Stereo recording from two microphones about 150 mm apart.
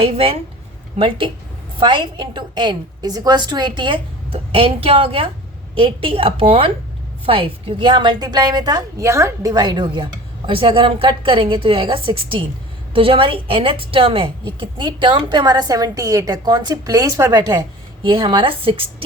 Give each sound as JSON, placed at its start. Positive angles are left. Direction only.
{"t": 0.0, "sound": "a woman's voice", "side_deg": -40}